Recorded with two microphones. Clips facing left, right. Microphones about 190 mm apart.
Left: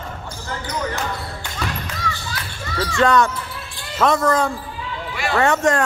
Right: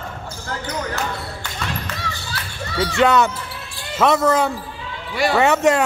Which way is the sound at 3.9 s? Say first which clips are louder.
Right 1 dB; 5° right (ahead or behind).